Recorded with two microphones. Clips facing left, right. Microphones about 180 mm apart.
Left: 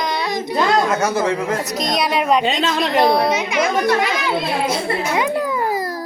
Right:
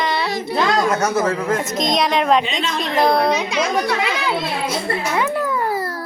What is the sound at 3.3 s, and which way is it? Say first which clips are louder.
Speech: even; 20° left (ahead or behind).